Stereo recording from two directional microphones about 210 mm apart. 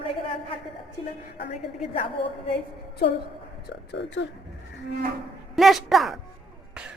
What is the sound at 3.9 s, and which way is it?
Speech, 55° left (ahead or behind).